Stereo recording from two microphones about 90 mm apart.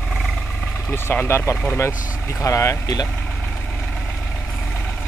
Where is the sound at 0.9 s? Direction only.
25° left (ahead or behind).